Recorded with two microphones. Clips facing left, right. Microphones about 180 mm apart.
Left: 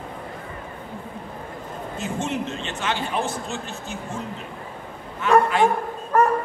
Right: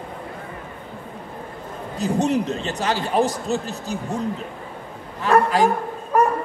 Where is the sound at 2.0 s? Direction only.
40° right (ahead or behind).